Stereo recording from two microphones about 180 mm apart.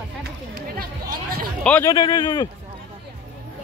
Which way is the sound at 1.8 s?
20° left (ahead or behind).